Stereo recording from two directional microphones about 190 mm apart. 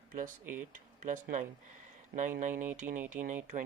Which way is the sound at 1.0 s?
45° right (ahead or behind).